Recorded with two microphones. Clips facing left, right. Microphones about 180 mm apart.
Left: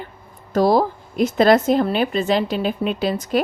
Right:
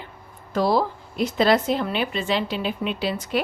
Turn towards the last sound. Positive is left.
turn(degrees=45)  # may be behind; listen again after turning